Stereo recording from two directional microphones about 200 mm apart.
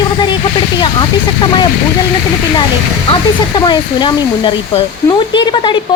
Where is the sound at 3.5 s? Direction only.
20° left (ahead or behind).